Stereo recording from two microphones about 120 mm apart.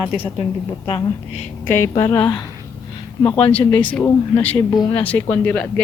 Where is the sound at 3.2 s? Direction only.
40° left (ahead or behind).